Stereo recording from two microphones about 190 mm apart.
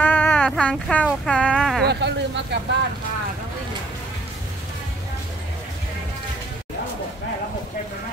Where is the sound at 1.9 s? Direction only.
65° right (ahead or behind).